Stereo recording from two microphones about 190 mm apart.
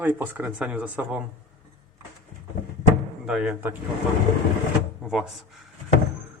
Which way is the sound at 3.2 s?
5° right (ahead or behind).